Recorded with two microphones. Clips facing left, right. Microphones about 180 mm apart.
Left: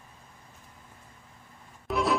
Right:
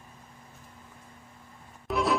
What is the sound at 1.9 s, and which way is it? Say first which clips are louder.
Music: even; centre (ahead or behind).